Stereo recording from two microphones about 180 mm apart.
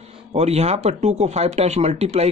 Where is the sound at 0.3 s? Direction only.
35° right (ahead or behind).